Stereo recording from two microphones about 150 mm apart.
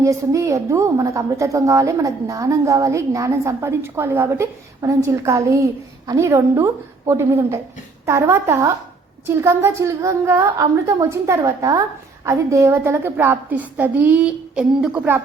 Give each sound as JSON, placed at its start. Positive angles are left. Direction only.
{"t": 0.0, "sound": "a woman's voice", "side_deg": -20}